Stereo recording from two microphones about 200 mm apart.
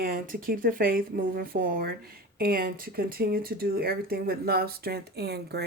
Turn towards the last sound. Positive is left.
turn(degrees=-55)  # may be behind; listen again after turning